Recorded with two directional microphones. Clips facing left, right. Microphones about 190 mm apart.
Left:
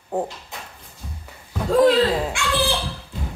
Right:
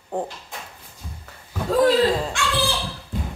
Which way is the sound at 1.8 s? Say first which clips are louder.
Left 1 dB; 5° left (ahead or behind).